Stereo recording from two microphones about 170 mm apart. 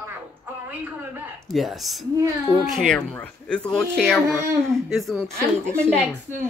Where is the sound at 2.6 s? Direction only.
Centre (ahead or behind).